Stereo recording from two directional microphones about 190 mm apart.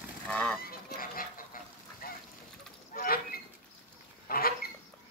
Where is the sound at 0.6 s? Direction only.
50° left (ahead or behind).